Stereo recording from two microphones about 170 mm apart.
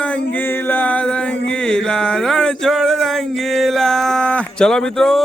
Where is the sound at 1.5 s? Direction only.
5° left (ahead or behind).